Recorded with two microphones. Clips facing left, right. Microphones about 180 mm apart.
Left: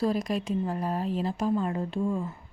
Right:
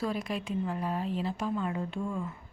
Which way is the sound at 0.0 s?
40° left (ahead or behind).